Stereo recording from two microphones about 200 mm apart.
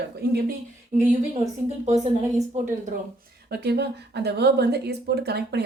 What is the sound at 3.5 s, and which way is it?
Speech, 55° right (ahead or behind).